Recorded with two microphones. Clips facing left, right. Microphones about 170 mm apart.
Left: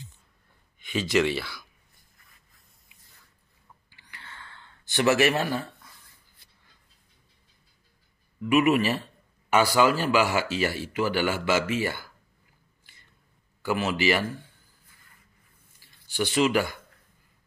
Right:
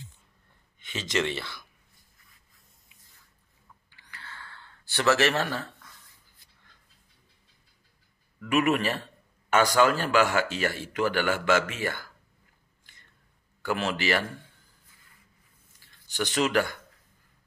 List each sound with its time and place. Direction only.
0.7 s speech: 10° left (ahead or behind)
3.9 s gasp: 15° left (ahead or behind)
8.5 s a man's voice: 10° left (ahead or behind)
12.9 s a sound: 10° left (ahead or behind)
13.7 s a man's voice: 10° left (ahead or behind)
16.1 s a man's voice: 10° left (ahead or behind)